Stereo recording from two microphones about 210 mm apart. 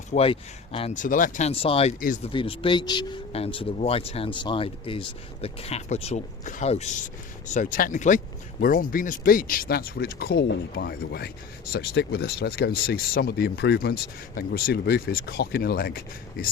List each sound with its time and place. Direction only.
0.1 s speech: 25° left (ahead or behind); by 16.5 s 45° left (ahead or behind)